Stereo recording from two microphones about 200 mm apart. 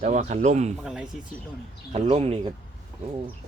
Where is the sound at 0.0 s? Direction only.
35° right (ahead or behind).